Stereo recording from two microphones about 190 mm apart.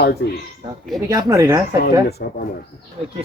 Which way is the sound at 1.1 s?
20° right (ahead or behind).